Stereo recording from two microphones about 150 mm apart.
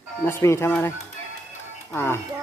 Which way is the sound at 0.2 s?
20° left (ahead or behind).